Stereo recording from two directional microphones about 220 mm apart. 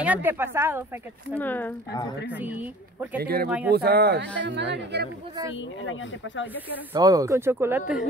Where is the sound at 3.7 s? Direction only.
45° right (ahead or behind).